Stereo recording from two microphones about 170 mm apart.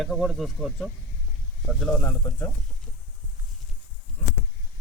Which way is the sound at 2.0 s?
15° left (ahead or behind).